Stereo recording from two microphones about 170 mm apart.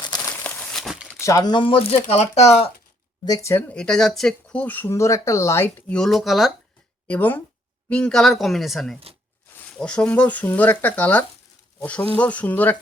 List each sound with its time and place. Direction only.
0.0 s crumpling: 20° left (ahead or behind); by 1.2 s 5° right (ahead or behind)
1.2 s speech: 20° left (ahead or behind); by 2.7 s 35° left (ahead or behind)
3.2 s speech: 20° left (ahead or behind); by 6.5 s centre (ahead or behind)
7.1 s speech: 10° left (ahead or behind)